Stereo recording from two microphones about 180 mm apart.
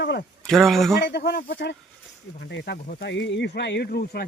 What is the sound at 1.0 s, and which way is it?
Speech, 65° left (ahead or behind).